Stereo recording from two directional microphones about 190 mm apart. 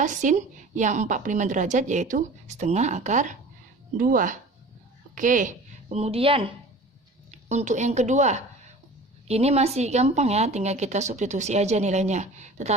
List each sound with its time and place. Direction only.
0.0 s a woman's voice: 40° right (ahead or behind)